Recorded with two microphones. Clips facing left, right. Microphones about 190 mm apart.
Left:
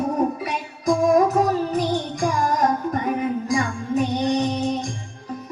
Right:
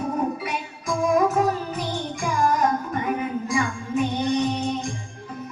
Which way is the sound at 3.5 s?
40° left (ahead or behind).